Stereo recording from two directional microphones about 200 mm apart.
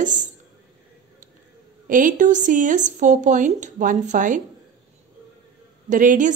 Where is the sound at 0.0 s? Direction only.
40° right (ahead or behind).